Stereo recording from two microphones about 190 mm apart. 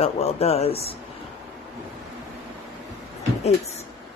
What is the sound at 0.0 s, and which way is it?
Speech, 35° left (ahead or behind).